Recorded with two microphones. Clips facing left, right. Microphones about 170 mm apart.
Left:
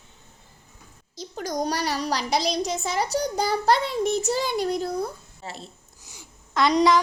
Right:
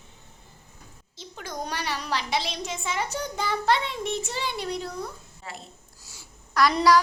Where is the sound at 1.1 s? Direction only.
40° left (ahead or behind).